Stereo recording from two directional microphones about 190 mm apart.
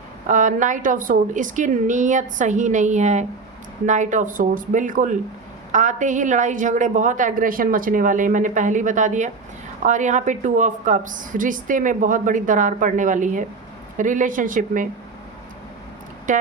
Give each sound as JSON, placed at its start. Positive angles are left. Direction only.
{"t": 0.3, "sound": "a woman's voice", "side_deg": -40}
{"t": 16.3, "sound": "speech", "side_deg": -40}